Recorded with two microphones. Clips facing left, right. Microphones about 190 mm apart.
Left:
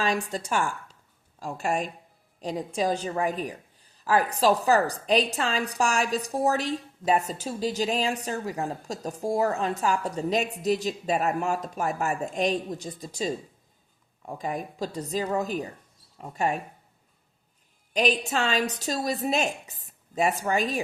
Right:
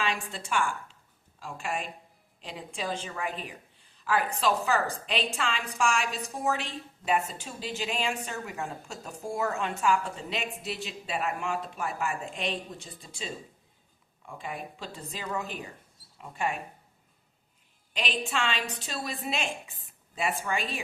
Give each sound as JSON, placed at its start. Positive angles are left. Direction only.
{"t": 0.0, "sound": "a woman's voice", "side_deg": 40}
{"t": 17.9, "sound": "a woman's voice", "side_deg": 40}